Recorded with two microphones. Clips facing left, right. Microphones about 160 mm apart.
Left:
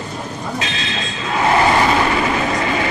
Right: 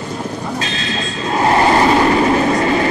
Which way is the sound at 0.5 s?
40° right (ahead or behind).